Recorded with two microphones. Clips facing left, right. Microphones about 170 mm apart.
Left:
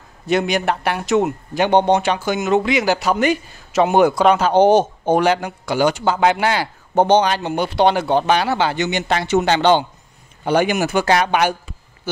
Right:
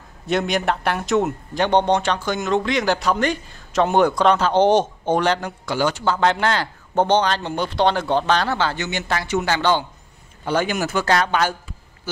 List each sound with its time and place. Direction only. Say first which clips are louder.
0.3 s speech: left 2 dB; centre (ahead or behind); by 11.5 s 15° left (ahead or behind)